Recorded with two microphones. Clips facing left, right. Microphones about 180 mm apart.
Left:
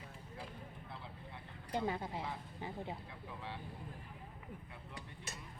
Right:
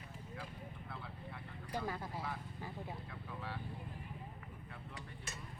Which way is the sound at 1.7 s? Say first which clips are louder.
Left 4 dB; 20° left (ahead or behind).